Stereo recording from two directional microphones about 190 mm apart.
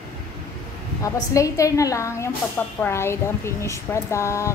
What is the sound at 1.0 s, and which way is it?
Speech, 15° left (ahead or behind).